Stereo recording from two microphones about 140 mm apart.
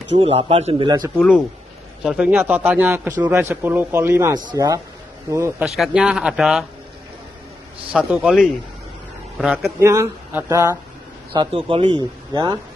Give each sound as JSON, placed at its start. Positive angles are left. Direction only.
{"t": 0.2, "sound": "a man's voice", "side_deg": -40}
{"t": 0.8, "sound": "speech", "side_deg": -25}
{"t": 1.1, "sound": "a man's voice", "side_deg": 5}
{"t": 5.8, "sound": "speech", "side_deg": -5}
{"t": 7.9, "sound": "speech", "side_deg": -5}
{"t": 9.8, "sound": "speech", "side_deg": -20}
{"t": 11.3, "sound": "speech", "side_deg": -40}